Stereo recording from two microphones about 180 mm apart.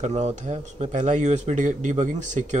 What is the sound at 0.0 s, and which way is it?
Speech, 40° right (ahead or behind).